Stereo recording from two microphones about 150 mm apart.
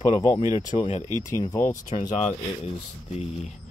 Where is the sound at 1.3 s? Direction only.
20° left (ahead or behind).